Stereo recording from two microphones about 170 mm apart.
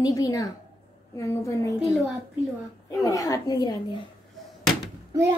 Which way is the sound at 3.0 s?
20° left (ahead or behind).